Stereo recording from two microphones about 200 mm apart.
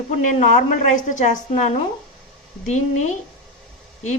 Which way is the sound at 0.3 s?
40° left (ahead or behind).